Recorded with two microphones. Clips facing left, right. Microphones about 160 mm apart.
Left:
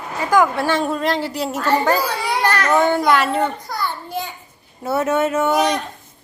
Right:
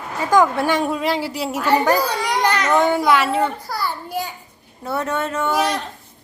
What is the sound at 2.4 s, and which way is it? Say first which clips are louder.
Baby cry: even; 20° right (ahead or behind).